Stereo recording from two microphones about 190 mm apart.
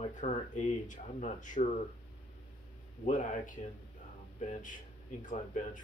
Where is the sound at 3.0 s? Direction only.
40° left (ahead or behind).